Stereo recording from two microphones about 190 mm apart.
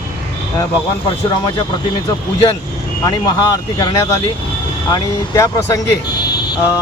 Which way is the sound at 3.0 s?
20° left (ahead or behind).